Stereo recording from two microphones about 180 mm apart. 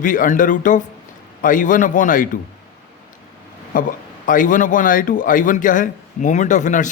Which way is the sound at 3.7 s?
45° left (ahead or behind).